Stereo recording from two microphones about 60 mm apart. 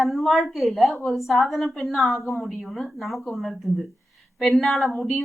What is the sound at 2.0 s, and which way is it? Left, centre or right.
Speech, left.